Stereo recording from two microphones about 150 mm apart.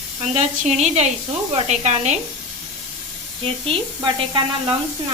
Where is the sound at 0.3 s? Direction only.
50° right (ahead or behind).